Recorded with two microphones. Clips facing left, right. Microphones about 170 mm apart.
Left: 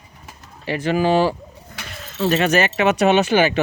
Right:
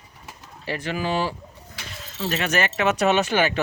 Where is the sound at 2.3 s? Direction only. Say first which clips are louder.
Left 6 dB; 35° left (ahead or behind).